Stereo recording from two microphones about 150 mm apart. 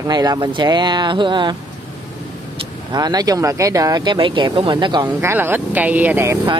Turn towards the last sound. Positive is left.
turn(degrees=-15)  # may be behind; listen again after turning